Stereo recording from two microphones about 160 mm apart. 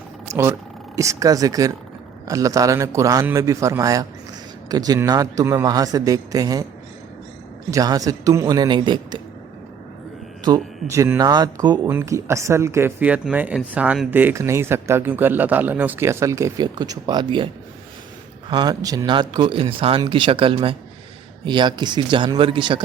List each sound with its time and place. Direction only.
0.3 s a man's voice: 15° right (ahead or behind)
7.7 s a man's voice: 20° right (ahead or behind)
10.4 s speech: 20° right (ahead or behind)
18.5 s a man's voice: 25° right (ahead or behind)